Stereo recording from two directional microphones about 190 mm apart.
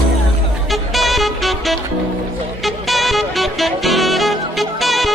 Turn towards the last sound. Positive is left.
turn(degrees=0)  # may be behind; listen again after turning